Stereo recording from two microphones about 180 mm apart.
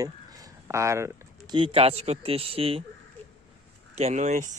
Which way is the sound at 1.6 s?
30° right (ahead or behind).